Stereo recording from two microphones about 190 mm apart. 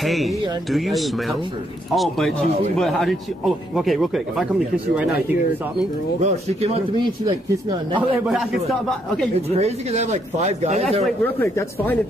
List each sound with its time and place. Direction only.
0.0 s speech: centre (ahead or behind)
6.2 s speech: 35° right (ahead or behind)
8.3 s speech: centre (ahead or behind)
9.6 s speech: 35° right (ahead or behind)
11.1 s speech: 10° left (ahead or behind)